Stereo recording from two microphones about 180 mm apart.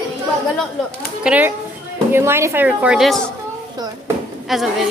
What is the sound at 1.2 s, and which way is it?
A woman's voice, 10° right (ahead or behind).